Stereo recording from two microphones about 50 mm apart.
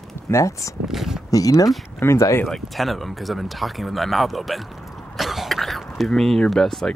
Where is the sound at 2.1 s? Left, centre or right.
Left.